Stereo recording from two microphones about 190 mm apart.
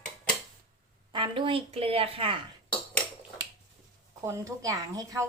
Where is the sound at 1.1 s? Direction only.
25° right (ahead or behind).